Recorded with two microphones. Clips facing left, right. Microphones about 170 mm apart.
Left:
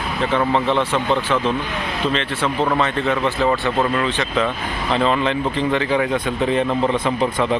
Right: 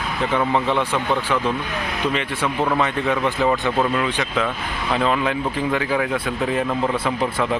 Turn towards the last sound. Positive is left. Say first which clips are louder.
# left 2 dB
turn(degrees=-5)  # may be behind; listen again after turning